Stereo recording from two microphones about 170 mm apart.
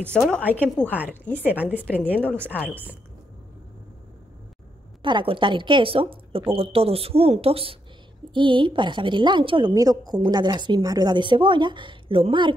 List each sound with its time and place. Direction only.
0.0 s a woman's voice: 5° left (ahead or behind)
0.4 s a woman's voice: 10° right (ahead or behind)
1.9 s speech: 10° left (ahead or behind)
5.0 s a woman's voice: 30° right (ahead or behind)